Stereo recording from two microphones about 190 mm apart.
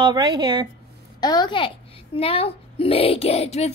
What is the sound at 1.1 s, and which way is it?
A woman's voice, 20° left (ahead or behind).